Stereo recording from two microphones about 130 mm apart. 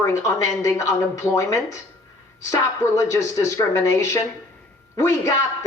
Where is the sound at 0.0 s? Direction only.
20° left (ahead or behind).